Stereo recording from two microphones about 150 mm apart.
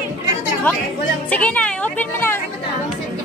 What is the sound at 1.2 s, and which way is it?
Speech, 10° left (ahead or behind).